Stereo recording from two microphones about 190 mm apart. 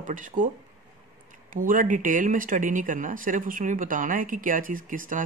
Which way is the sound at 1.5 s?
45° right (ahead or behind).